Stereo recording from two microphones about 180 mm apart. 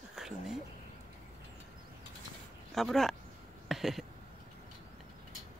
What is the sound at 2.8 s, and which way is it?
Speech, centre (ahead or behind).